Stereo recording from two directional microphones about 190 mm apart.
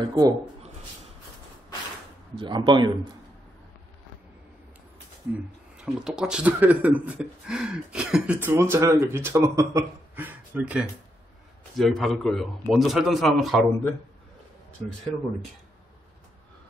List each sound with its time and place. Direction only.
0.1 s speech: 20° right (ahead or behind)
2.3 s speech: 25° right (ahead or behind)
5.8 s a man's voice: 5° right (ahead or behind)